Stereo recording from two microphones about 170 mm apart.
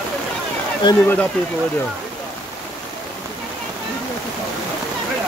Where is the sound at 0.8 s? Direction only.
30° left (ahead or behind).